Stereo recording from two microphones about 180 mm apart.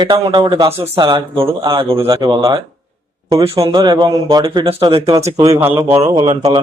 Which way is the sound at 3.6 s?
20° right (ahead or behind).